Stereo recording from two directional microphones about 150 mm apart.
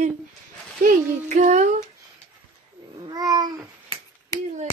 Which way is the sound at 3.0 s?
25° right (ahead or behind).